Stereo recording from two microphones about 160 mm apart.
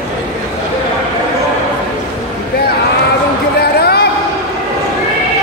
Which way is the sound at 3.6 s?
90° left.